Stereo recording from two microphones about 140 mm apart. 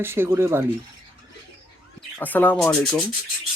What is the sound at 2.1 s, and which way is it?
Speech, 10° left (ahead or behind).